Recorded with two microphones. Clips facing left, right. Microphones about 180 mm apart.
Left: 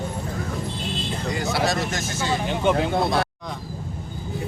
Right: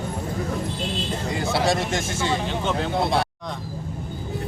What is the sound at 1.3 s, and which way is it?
A man's voice, 25° right (ahead or behind).